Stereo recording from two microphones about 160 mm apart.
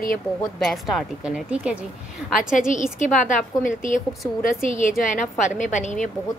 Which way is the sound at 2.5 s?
55° left (ahead or behind).